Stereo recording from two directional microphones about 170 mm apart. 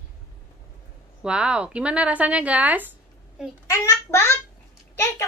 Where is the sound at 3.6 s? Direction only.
15° left (ahead or behind).